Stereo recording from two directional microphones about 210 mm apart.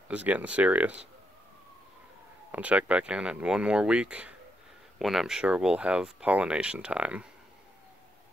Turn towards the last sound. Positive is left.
turn(degrees=-5)  # may be behind; listen again after turning